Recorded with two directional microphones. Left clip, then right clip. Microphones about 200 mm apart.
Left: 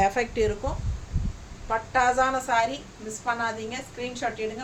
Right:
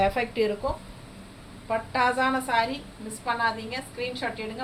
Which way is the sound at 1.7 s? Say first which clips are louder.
Left 2 dB; 20° left (ahead or behind).